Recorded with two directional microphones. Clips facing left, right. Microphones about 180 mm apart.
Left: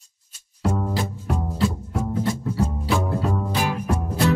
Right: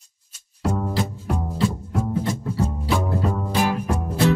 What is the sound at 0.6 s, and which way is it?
Music, centre (ahead or behind).